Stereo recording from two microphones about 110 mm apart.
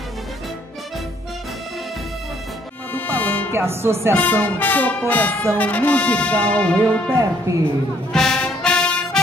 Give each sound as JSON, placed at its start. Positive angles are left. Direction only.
{"t": 2.9, "sound": "music", "side_deg": 15}
{"t": 3.5, "sound": "music", "side_deg": -20}
{"t": 4.2, "sound": "speech", "side_deg": 15}
{"t": 7.1, "sound": "music", "side_deg": -30}
{"t": 8.1, "sound": "music", "side_deg": 5}